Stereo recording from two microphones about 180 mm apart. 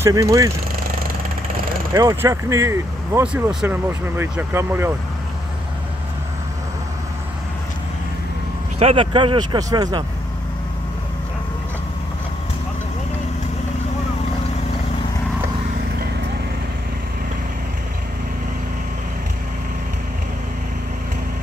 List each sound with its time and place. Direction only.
0.0 s speech: 20° right (ahead or behind)
2.0 s speech: 20° right (ahead or behind)
8.7 s speech: 35° right (ahead or behind)